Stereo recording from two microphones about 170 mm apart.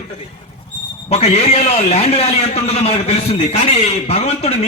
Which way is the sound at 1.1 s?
35° left (ahead or behind).